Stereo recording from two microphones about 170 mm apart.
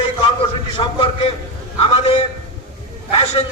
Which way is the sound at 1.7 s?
35° left (ahead or behind).